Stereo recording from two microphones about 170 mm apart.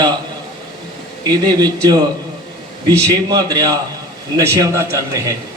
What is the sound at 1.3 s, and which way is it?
Speech, 25° right (ahead or behind).